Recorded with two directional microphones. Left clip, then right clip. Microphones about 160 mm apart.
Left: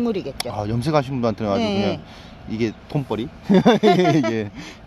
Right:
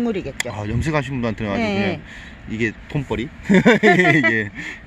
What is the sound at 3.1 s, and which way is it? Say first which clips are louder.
Speech: right 1 dB; 15° right (ahead or behind).